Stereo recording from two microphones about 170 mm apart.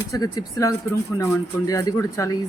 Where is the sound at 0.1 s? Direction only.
20° left (ahead or behind).